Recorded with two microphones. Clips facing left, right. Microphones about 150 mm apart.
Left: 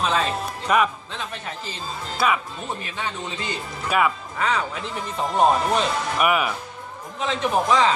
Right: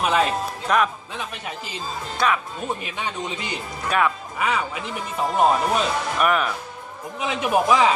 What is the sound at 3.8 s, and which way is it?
Speech, 5° left (ahead or behind).